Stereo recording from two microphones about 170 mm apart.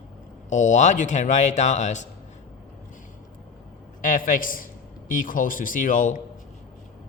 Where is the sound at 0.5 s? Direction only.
45° left (ahead or behind).